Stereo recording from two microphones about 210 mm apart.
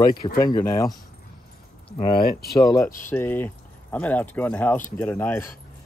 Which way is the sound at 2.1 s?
45° left (ahead or behind).